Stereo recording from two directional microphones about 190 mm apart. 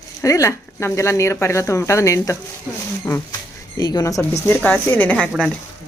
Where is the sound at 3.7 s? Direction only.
20° left (ahead or behind).